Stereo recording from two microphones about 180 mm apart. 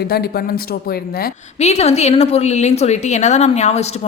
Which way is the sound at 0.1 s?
60° left (ahead or behind).